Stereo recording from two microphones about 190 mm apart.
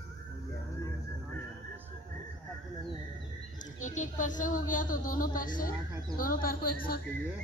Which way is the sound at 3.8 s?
40° left (ahead or behind).